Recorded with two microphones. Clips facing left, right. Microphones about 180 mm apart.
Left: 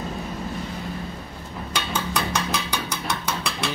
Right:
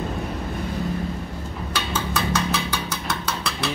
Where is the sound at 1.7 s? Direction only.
15° left (ahead or behind).